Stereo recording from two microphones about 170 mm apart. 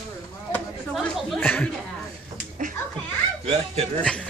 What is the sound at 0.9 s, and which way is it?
Chatter, centre (ahead or behind).